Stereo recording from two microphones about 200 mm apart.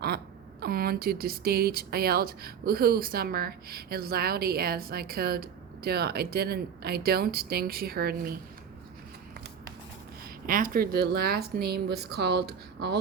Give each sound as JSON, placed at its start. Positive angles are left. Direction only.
{"t": 0.6, "sound": "speech", "side_deg": -50}
{"t": 10.4, "sound": "speech", "side_deg": -45}